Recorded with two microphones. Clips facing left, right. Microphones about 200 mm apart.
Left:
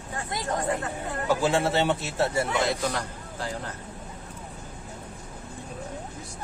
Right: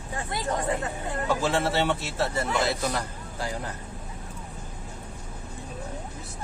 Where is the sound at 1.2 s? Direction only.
15° left (ahead or behind).